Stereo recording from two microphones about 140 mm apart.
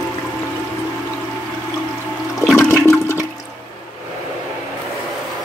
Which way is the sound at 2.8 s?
20° left (ahead or behind).